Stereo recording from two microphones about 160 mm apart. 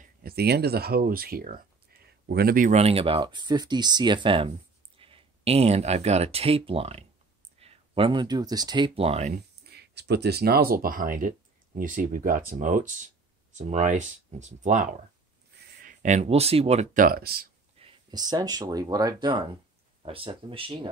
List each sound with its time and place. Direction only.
0.0 s speech: 70° right (ahead or behind)
2.7 s speech: 40° right (ahead or behind)
9.6 s speech: 90° right; by 17.5 s 70° right (ahead or behind)
17.8 s a sound: 40° right (ahead or behind)
18.1 s speech: 25° right (ahead or behind)